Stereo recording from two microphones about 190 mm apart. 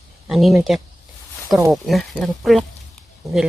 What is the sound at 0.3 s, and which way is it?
Speech, centre (ahead or behind).